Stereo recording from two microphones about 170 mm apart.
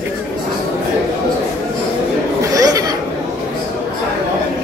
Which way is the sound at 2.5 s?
20° right (ahead or behind).